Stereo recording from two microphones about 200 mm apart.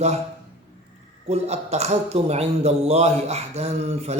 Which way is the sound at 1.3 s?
35° right (ahead or behind).